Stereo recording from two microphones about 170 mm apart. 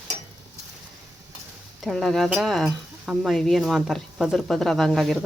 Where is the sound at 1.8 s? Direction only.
Centre (ahead or behind).